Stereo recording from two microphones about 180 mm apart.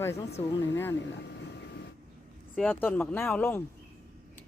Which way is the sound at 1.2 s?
70° left (ahead or behind).